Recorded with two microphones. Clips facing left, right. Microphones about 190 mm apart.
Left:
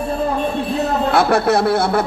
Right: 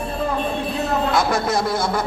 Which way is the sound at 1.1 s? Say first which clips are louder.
Left 8 dB; 65° left (ahead or behind).